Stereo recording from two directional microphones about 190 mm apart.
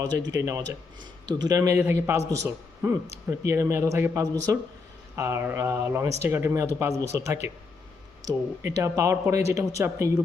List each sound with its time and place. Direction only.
0.3 s a man's voice: 15° right (ahead or behind)